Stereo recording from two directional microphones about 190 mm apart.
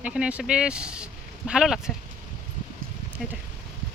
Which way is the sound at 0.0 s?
5° right (ahead or behind).